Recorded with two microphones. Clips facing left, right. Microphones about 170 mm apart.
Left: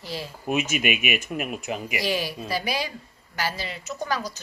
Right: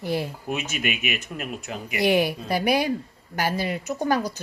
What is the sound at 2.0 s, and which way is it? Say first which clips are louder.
Speech: right 11 dB; 60° right (ahead or behind).